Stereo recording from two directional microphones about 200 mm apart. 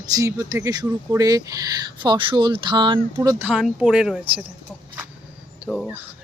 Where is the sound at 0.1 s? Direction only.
15° right (ahead or behind).